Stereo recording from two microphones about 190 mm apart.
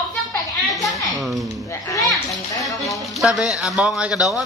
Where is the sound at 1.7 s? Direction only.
15° left (ahead or behind).